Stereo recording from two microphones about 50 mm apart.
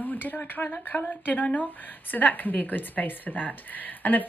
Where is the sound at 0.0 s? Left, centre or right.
Left.